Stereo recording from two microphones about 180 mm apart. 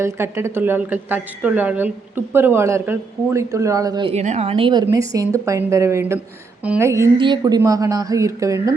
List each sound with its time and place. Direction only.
0.0 s a woman's voice: 15° right (ahead or behind)
4.1 s a woman's voice: 40° right (ahead or behind); by 8.7 s 15° right (ahead or behind)